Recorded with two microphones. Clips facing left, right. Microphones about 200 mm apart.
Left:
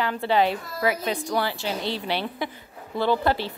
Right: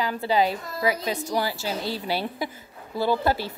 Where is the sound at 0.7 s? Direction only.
20° right (ahead or behind).